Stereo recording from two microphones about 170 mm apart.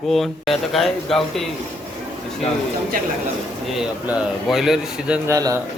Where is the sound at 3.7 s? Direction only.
Centre (ahead or behind).